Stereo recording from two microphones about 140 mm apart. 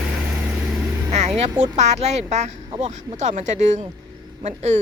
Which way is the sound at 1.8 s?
55° right (ahead or behind).